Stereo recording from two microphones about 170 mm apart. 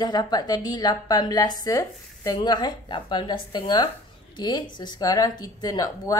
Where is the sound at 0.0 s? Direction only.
25° left (ahead or behind).